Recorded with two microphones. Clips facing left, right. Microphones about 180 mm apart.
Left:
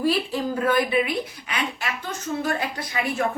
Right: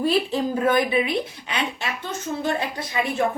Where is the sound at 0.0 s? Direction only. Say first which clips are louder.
Right 2 dB; 20° right (ahead or behind).